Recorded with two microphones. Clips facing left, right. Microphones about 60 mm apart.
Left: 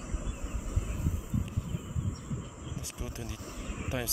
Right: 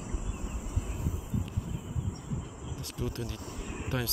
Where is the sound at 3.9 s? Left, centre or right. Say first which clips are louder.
Right 2 dB; centre.